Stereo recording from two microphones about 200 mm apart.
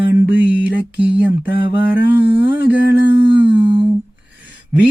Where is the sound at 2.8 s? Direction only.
60° left (ahead or behind).